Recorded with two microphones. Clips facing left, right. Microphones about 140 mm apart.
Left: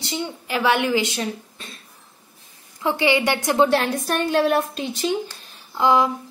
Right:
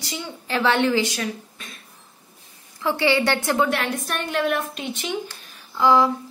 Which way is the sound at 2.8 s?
20° left (ahead or behind).